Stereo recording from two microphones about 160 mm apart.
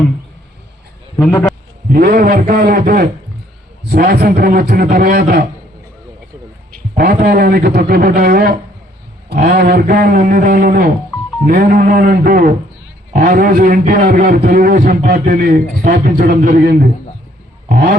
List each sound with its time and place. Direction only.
1.2 s a man's voice: 15° left (ahead or behind)
1.9 s a man's voice: 65° right (ahead or behind)
6.9 s a man's voice: 70° right (ahead or behind)
15.1 s a man's voice: 60° right (ahead or behind)